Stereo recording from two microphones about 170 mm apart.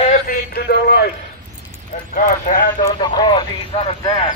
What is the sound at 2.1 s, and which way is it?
Speech, 50° left (ahead or behind).